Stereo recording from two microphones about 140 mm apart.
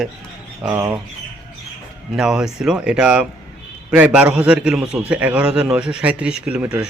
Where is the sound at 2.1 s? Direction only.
5° right (ahead or behind).